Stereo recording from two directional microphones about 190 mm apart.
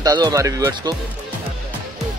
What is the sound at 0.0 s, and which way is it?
Speech, 20° right (ahead or behind).